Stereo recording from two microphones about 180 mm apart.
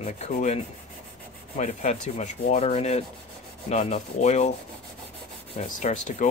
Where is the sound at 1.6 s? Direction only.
40° left (ahead or behind).